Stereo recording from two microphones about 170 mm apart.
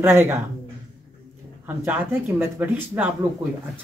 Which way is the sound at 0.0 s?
15° right (ahead or behind).